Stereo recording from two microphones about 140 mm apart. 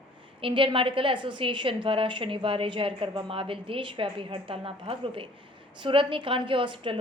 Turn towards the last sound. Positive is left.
turn(degrees=-35)  # may be behind; listen again after turning